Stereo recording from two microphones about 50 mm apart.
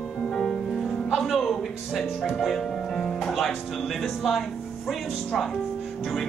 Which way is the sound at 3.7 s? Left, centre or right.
Centre.